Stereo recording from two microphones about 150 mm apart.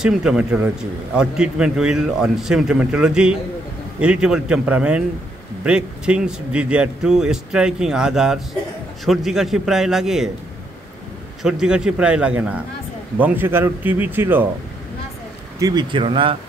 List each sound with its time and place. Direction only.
0.0 s a man's voice: 5° right (ahead or behind)
11.4 s a man's voice: 5° right (ahead or behind)
15.6 s speech: 30° right (ahead or behind)